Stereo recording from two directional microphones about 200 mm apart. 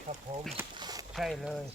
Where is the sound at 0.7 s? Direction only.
20° right (ahead or behind).